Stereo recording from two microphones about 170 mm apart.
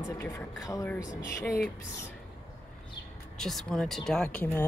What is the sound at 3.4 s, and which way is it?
Speech, centre (ahead or behind).